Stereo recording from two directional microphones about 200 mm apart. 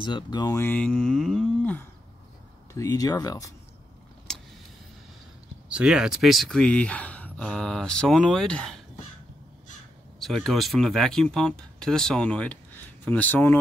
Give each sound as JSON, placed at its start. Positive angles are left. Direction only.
{"t": 0.0, "sound": "speech", "side_deg": 20}
{"t": 5.7, "sound": "speech", "side_deg": -5}
{"t": 10.2, "sound": "speech", "side_deg": 0}